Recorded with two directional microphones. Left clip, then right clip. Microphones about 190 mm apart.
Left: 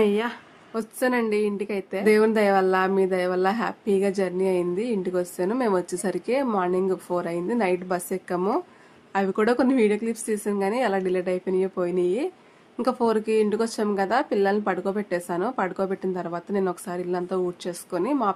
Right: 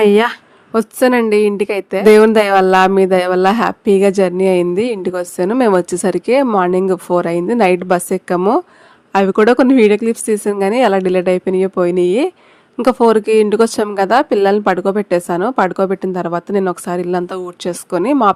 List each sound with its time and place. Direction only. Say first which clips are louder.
0.0 s a woman's voice: right 12 dB; 55° right (ahead or behind)